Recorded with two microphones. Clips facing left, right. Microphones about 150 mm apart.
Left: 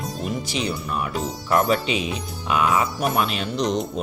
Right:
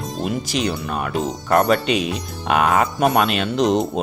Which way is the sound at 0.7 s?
75° right (ahead or behind).